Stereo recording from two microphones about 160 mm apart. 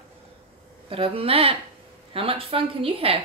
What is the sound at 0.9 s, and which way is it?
Speech, 35° right (ahead or behind).